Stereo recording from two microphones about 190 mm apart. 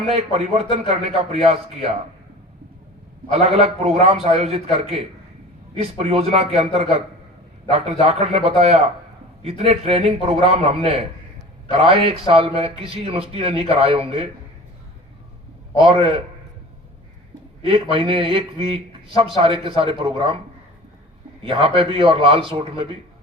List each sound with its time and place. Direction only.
0.1 s a man's voice: 35° right (ahead or behind)
3.3 s a man's voice: 35° right (ahead or behind)
15.8 s a man's voice: 25° right (ahead or behind)
17.6 s a man's voice: 30° right (ahead or behind)
21.4 s a man's voice: 25° right (ahead or behind)